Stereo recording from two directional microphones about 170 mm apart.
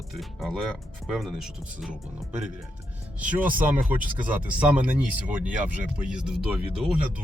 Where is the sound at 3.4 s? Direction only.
55° right (ahead or behind).